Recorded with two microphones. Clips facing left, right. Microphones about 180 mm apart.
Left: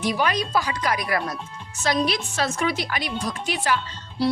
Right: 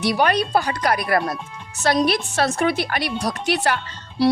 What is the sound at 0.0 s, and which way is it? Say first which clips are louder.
A woman's voice: right 4 dB; 65° right (ahead or behind).